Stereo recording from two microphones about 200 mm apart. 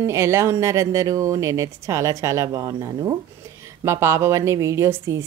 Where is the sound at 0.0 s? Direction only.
15° right (ahead or behind).